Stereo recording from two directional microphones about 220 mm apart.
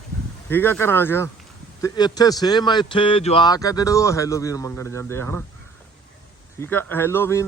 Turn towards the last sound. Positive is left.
turn(degrees=10)  # may be behind; listen again after turning